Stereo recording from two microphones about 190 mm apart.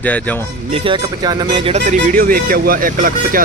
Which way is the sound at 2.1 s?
50° right (ahead or behind).